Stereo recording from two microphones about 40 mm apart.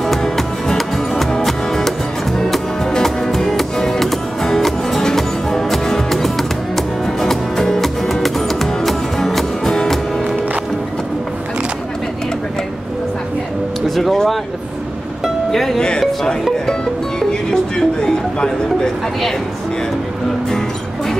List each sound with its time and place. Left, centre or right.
0.0 s music: centre
2.9 s music: centre
3.3 s music: centre
13.8 s music: centre
15.5 s music: centre
17.3 s a sound: centre